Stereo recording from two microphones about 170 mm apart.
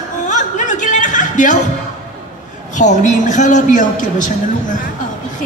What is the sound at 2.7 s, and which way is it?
A woman's voice, 45° left (ahead or behind).